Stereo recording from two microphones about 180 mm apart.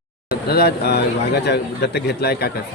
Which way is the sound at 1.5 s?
65° left (ahead or behind).